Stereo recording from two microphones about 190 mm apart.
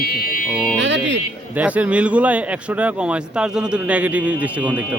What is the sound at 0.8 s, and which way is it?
Music, 70° right (ahead or behind).